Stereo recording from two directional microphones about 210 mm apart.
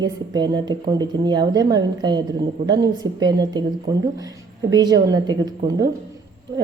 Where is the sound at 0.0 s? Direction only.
20° right (ahead or behind).